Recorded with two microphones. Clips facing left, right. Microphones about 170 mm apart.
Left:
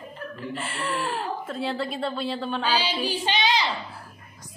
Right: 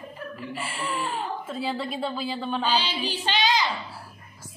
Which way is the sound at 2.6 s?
10° left (ahead or behind).